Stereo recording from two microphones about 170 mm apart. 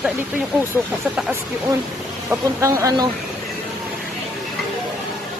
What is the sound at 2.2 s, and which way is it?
Speech, 15° right (ahead or behind).